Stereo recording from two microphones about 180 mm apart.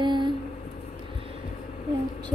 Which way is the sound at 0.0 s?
25° right (ahead or behind).